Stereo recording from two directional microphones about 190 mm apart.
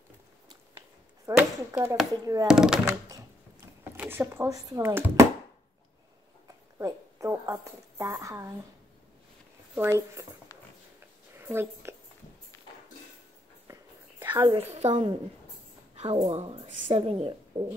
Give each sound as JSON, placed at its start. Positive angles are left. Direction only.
{"t": 0.7, "sound": "a sound", "side_deg": -15}
{"t": 2.4, "sound": "speech", "side_deg": -5}
{"t": 3.9, "sound": "speech", "side_deg": -10}
{"t": 6.4, "sound": "speech", "side_deg": -15}
{"t": 9.8, "sound": "speech", "side_deg": -15}
{"t": 11.3, "sound": "a woman's voice", "side_deg": -10}
{"t": 12.5, "sound": "a sound", "side_deg": 15}
{"t": 14.2, "sound": "a sound", "side_deg": -10}
{"t": 14.5, "sound": "a woman's voice", "side_deg": -35}